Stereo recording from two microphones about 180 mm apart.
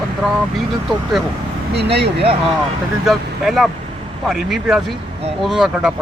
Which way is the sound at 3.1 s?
Centre (ahead or behind).